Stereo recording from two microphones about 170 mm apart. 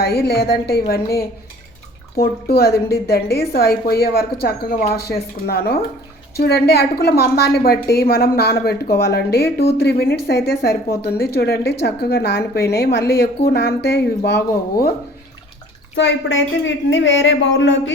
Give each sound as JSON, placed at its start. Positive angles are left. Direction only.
{"t": 0.0, "sound": "a woman's voice", "side_deg": 65}
{"t": 16.0, "sound": "speech", "side_deg": 90}